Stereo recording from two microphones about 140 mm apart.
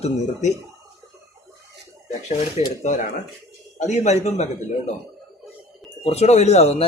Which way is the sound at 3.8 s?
55° left (ahead or behind).